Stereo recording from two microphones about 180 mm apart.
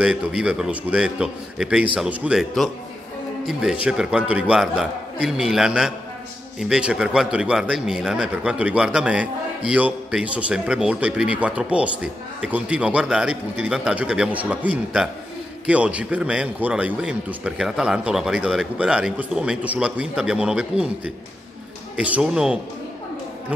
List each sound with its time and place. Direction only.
0.0 s a man's voice: 5° right (ahead or behind)
3.8 s a man's voice: 5° right (ahead or behind)